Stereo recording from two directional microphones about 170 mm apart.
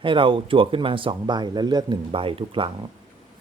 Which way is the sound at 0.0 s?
30° right (ahead or behind).